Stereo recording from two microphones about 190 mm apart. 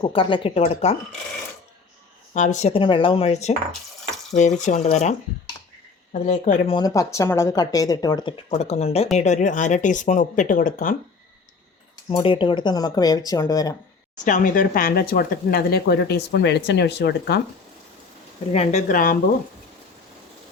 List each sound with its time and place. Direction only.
0.0 s speech: 25° left (ahead or behind)
2.3 s speech: 40° left (ahead or behind)
6.2 s speech: 45° left (ahead or behind)
6.7 s speech: 20° left (ahead or behind); by 10.9 s 45° left (ahead or behind)
12.1 s speech: 25° left (ahead or behind)
14.3 s speech: 45° left (ahead or behind); by 17.4 s 60° left (ahead or behind)
18.5 s speech: 35° left (ahead or behind)